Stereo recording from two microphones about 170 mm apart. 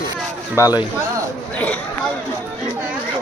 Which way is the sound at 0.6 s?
20° left (ahead or behind).